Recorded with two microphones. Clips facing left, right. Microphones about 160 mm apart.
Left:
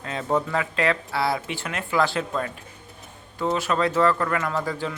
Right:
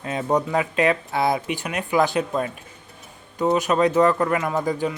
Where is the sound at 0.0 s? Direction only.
15° right (ahead or behind).